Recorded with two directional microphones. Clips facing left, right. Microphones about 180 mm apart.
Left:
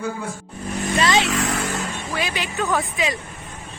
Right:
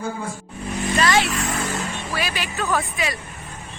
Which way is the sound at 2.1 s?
20° left (ahead or behind).